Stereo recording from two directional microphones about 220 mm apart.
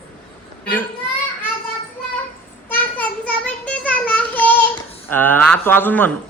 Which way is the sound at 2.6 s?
5° left (ahead or behind).